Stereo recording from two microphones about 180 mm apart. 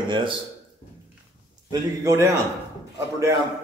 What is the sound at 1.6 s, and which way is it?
Speech, 20° right (ahead or behind).